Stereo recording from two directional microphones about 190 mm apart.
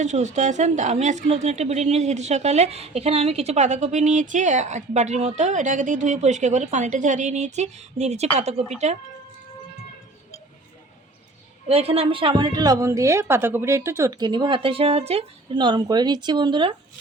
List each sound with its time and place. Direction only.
0.0 s a woman's voice: 40° right (ahead or behind)
11.7 s a woman's voice: 30° right (ahead or behind)